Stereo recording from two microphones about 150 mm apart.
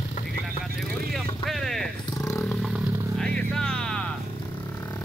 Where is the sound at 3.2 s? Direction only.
5° left (ahead or behind).